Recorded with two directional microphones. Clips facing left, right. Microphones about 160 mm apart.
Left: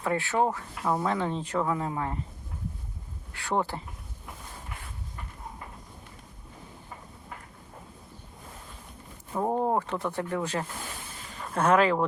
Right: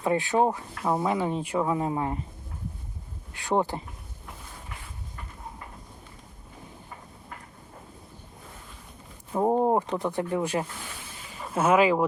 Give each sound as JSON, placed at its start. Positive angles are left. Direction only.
{"t": 0.0, "sound": "speech", "side_deg": -15}
{"t": 3.3, "sound": "speech", "side_deg": -15}
{"t": 9.3, "sound": "speech", "side_deg": -15}